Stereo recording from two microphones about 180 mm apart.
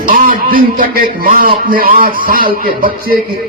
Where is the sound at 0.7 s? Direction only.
55° right (ahead or behind).